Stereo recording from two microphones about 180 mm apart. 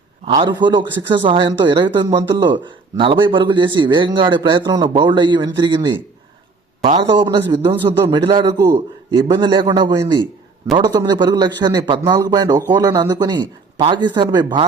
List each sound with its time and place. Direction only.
0.4 s a man's voice: 25° right (ahead or behind)
7.1 s a man's voice: 30° right (ahead or behind)